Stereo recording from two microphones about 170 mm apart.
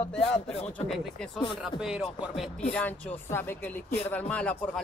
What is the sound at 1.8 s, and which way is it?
Speech, 5° right (ahead or behind).